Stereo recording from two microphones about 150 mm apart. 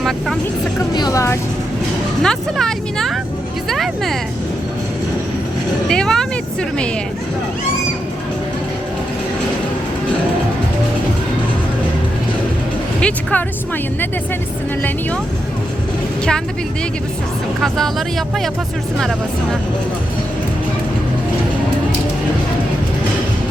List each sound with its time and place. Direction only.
0.9 s speech: 25° left (ahead or behind)
2.2 s speech: 5° left (ahead or behind)
5.9 s speech: 5° left (ahead or behind)
13.0 s speech: 10° left (ahead or behind)
17.6 s speech: centre (ahead or behind)